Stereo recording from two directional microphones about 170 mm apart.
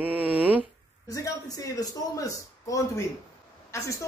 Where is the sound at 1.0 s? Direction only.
20° left (ahead or behind).